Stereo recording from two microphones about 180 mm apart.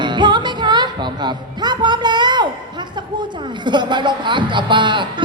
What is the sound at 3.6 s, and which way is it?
A woman's voice, 25° right (ahead or behind).